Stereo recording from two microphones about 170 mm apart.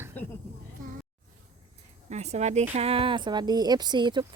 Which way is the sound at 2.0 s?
40° right (ahead or behind).